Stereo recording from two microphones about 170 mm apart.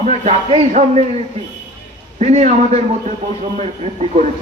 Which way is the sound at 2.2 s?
40° right (ahead or behind).